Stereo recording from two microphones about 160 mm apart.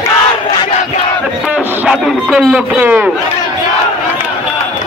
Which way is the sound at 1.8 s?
5° right (ahead or behind).